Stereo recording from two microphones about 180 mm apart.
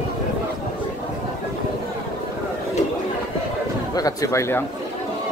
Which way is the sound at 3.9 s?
20° left (ahead or behind).